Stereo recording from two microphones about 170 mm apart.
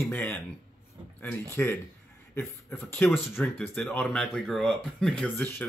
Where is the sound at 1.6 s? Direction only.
5° left (ahead or behind).